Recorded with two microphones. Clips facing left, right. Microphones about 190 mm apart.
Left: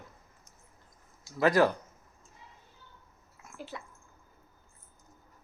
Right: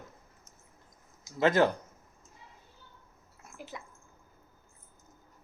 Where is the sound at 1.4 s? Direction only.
25° right (ahead or behind).